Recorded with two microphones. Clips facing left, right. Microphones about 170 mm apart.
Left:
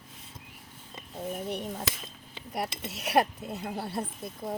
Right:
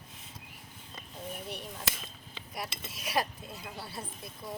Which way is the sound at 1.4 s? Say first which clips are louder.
Left 7 dB; 55° left (ahead or behind).